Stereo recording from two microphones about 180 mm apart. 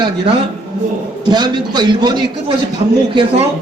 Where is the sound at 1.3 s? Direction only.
25° right (ahead or behind).